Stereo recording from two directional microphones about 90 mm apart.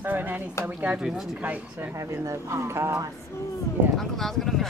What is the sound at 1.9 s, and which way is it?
Speech, 35° right (ahead or behind).